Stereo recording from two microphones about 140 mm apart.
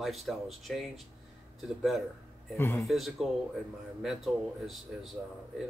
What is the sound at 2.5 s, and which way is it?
Speech, 20° left (ahead or behind).